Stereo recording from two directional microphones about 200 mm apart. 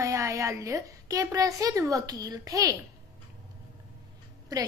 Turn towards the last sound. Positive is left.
turn(degrees=-20)  # may be behind; listen again after turning